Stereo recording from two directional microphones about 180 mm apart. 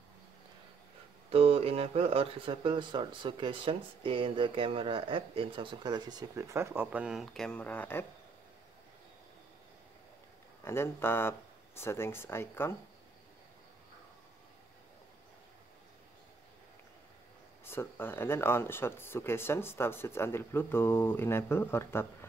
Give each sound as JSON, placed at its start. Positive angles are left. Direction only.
{"t": 1.3, "sound": "speech", "side_deg": -35}
{"t": 10.6, "sound": "speech", "side_deg": 15}
{"t": 17.6, "sound": "speech", "side_deg": 10}